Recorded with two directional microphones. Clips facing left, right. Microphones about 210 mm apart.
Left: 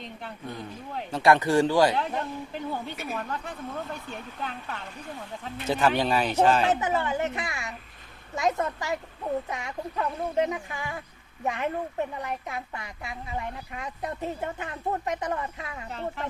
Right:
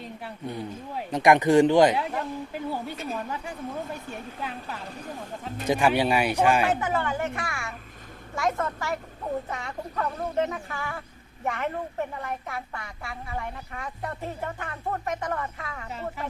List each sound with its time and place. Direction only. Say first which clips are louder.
0.0 s speech: right 2 dB; 5° right (ahead or behind)
2.0 s speech: even; 5° right (ahead or behind)
6.7 s speech: left 1 dB; 20° left (ahead or behind)
15.9 s speech: left 1 dB; 5° right (ahead or behind)